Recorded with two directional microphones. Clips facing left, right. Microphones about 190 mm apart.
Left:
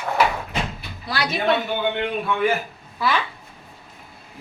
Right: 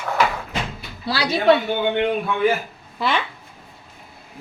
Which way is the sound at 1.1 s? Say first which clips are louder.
Right 4 dB; 30° right (ahead or behind).